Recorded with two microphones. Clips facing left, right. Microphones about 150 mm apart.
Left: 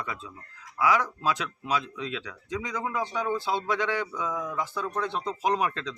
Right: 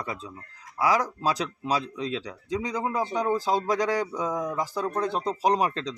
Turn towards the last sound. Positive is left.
turn(degrees=-35)  # may be behind; listen again after turning